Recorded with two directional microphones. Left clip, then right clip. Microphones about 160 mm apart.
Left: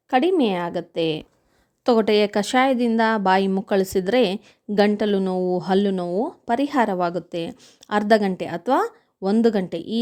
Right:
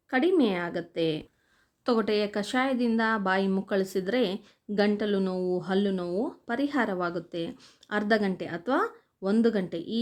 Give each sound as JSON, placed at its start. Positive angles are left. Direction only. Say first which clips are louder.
{"t": 0.1, "sound": "speech", "louder": "left 6 dB", "side_deg": 45}